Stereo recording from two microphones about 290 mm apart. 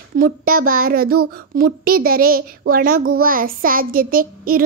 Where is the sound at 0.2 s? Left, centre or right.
Right.